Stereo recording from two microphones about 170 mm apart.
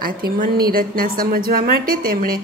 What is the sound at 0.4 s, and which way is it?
A woman's voice, 60° right (ahead or behind).